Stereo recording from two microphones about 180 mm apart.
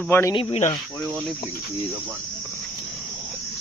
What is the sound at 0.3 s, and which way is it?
Speech, 30° left (ahead or behind).